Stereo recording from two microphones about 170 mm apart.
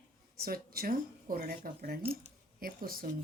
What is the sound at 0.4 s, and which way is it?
Speech, 60° right (ahead or behind).